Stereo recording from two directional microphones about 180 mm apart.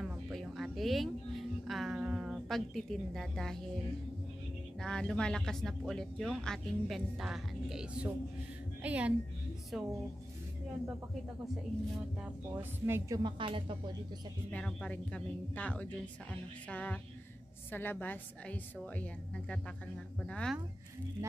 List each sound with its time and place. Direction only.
0.0 s a sound: centre (ahead or behind)
4.8 s a woman's voice: 5° left (ahead or behind)
12.8 s a woman's voice: 15° right (ahead or behind)
13.2 s a woman's voice: 30° right (ahead or behind)
14.5 s speech: 5° left (ahead or behind)